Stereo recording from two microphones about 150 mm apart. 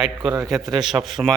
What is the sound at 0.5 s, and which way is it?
Speech, 25° right (ahead or behind).